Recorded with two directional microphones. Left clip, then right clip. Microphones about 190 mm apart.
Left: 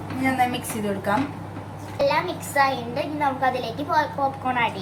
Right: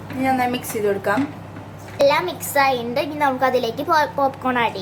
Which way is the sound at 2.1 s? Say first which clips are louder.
Right 4 dB; 50° right (ahead or behind).